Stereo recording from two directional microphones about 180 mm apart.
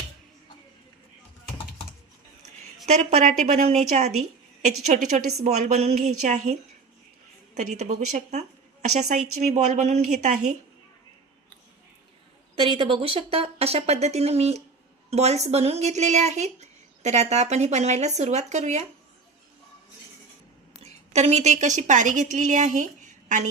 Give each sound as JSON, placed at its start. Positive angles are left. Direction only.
{"t": 2.8, "sound": "a woman's voice", "side_deg": -40}
{"t": 12.6, "sound": "speech", "side_deg": -30}
{"t": 20.8, "sound": "a woman's voice", "side_deg": -40}